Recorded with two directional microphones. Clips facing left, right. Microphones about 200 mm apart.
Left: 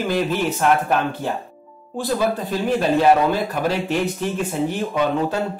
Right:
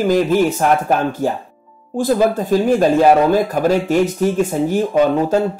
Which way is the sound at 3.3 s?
45° right (ahead or behind).